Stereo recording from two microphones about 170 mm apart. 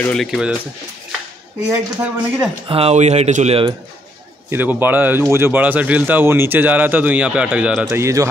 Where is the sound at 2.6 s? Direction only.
35° right (ahead or behind).